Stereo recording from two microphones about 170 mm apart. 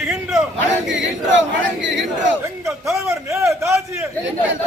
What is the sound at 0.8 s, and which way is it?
Crowd, 90° right.